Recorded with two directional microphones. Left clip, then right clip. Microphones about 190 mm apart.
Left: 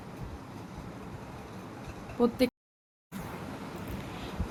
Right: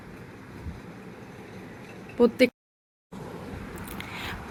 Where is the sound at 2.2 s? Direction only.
35° right (ahead or behind).